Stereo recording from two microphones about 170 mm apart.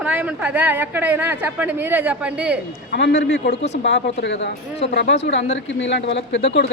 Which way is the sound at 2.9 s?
90° left.